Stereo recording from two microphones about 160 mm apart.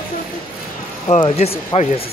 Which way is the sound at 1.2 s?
35° left (ahead or behind).